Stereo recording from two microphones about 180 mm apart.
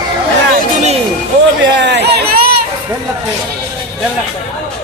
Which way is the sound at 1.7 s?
80° right.